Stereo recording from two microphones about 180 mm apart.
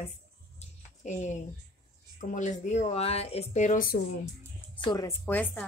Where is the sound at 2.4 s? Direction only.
40° left (ahead or behind).